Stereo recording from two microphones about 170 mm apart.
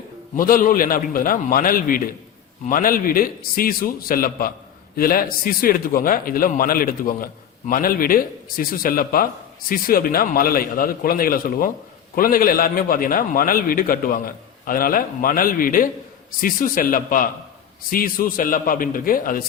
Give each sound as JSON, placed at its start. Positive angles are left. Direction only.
{"t": 0.3, "sound": "a man's voice", "side_deg": 55}